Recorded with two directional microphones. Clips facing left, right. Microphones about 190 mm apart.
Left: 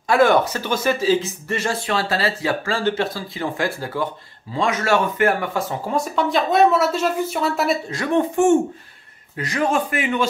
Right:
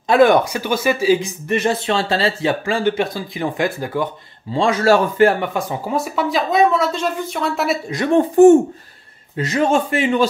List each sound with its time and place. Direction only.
0.1 s speech: 15° right (ahead or behind)
4.6 s a man's voice: 30° right (ahead or behind)
5.5 s speech: 10° right (ahead or behind)
7.9 s a man's voice: 25° right (ahead or behind)
9.4 s a man's voice: 25° right (ahead or behind)